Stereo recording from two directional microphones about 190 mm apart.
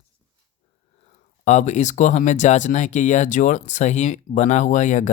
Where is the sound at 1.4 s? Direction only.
40° left (ahead or behind).